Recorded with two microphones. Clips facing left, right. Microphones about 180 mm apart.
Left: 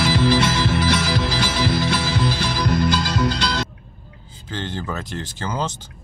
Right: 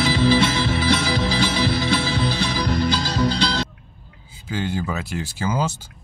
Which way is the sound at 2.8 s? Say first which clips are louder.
Left 1 dB; 50° left (ahead or behind).